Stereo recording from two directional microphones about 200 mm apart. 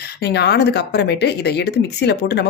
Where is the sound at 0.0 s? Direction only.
55° left (ahead or behind).